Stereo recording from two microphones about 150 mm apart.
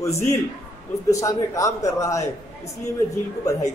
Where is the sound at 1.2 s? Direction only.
20° left (ahead or behind).